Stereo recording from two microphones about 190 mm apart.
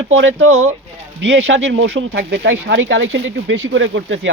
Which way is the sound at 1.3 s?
70° right (ahead or behind).